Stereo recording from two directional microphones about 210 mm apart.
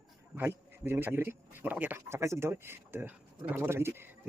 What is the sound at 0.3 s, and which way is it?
A man's voice, 10° right (ahead or behind).